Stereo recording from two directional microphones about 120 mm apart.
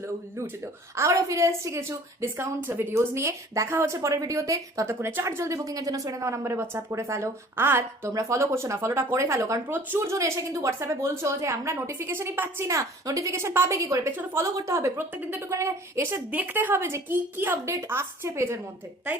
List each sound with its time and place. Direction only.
0.0 s a woman's voice: 20° right (ahead or behind)